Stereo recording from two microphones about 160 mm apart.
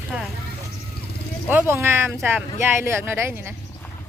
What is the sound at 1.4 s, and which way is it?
Speech, 15° right (ahead or behind).